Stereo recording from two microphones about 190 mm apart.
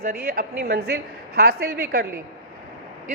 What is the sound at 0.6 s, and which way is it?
A woman's voice, 60° right (ahead or behind).